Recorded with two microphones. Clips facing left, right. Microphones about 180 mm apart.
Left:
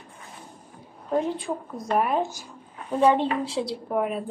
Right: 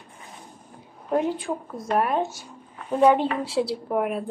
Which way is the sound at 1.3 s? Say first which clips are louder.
Right 1 dB; centre (ahead or behind).